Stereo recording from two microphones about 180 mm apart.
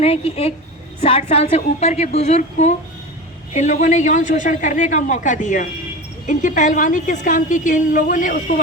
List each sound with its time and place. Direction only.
0.0 s a woman's voice: 35° left (ahead or behind)